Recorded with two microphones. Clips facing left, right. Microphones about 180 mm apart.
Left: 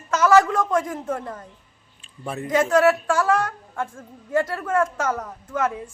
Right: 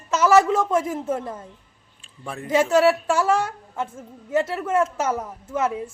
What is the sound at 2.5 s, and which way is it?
A woman's voice, 25° right (ahead or behind).